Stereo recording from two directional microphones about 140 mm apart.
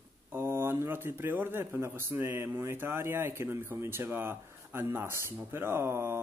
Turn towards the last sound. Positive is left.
turn(degrees=-15)  # may be behind; listen again after turning